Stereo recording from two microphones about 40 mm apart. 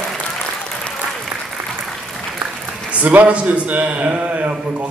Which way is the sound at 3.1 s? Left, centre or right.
Right.